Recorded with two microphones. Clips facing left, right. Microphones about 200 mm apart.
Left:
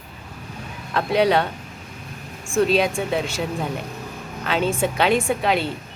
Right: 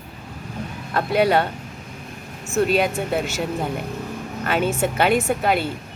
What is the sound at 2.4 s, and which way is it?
Speech, 5° right (ahead or behind).